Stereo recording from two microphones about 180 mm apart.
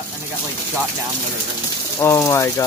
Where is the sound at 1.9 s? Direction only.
15° left (ahead or behind).